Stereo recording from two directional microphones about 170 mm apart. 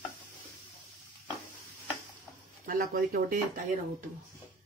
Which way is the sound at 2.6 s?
60° right (ahead or behind).